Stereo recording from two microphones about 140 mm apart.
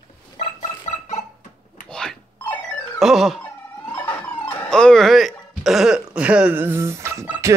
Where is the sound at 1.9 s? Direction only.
5° left (ahead or behind).